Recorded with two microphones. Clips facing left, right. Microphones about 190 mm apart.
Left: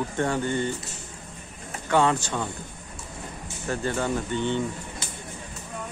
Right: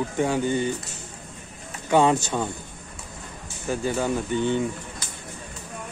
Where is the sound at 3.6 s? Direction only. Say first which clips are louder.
Right 2 dB; 5° right (ahead or behind).